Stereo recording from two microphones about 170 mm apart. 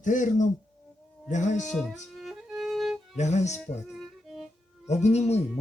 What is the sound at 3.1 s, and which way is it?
Speech, 40° left (ahead or behind).